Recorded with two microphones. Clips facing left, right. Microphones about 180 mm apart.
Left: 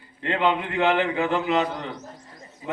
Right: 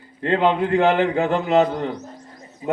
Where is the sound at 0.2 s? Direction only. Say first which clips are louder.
Right 5 dB; 45° right (ahead or behind).